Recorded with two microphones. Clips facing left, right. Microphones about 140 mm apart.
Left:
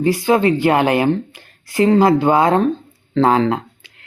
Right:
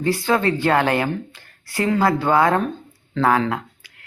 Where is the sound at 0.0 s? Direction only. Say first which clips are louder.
Left 5 dB; 15° left (ahead or behind).